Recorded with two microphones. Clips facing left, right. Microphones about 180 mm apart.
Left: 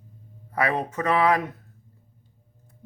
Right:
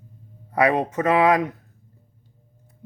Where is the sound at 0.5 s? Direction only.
20° right (ahead or behind).